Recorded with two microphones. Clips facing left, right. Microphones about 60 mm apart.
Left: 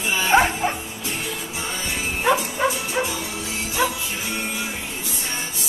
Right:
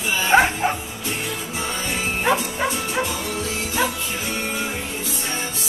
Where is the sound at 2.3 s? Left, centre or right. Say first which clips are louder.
Left 2 dB; centre.